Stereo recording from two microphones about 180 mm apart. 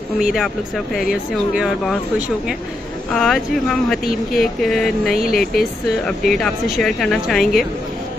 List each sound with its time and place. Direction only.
0.2 s speech: centre (ahead or behind)
5.1 s speech: 55° left (ahead or behind)
6.0 s speech: centre (ahead or behind)